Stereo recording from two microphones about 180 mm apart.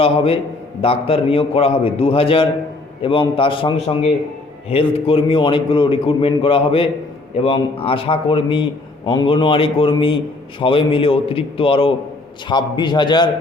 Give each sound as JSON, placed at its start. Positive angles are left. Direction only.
{"t": 0.8, "sound": "a man's voice", "side_deg": 30}